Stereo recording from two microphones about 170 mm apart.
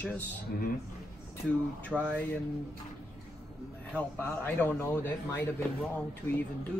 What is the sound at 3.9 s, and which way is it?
A man's voice, 10° left (ahead or behind).